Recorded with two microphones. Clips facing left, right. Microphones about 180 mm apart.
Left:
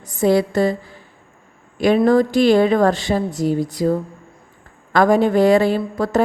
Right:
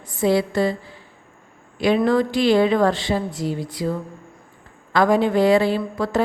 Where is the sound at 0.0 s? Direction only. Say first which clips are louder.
Left 3 dB; 45° left (ahead or behind).